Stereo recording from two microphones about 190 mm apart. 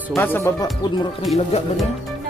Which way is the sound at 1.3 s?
Centre (ahead or behind).